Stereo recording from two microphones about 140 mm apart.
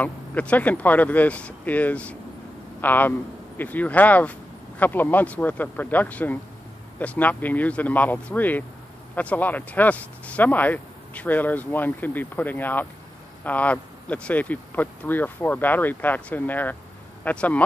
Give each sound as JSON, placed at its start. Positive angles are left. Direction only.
{"t": 0.0, "sound": "speech", "side_deg": 10}